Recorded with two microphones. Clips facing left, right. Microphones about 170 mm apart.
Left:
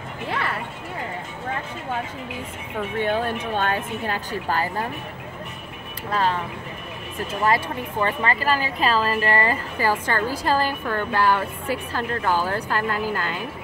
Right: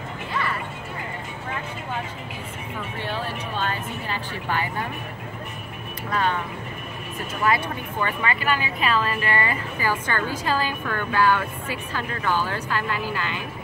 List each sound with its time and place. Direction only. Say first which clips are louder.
3.0 s speech: left 7 dB; 55° left (ahead or behind)
4.3 s a woman's voice: left 2 dB; 40° left (ahead or behind)
6.0 s a woman's voice: left 1 dB; 30° left (ahead or behind)
8.0 s a woman's voice: left 3 dB; 35° left (ahead or behind)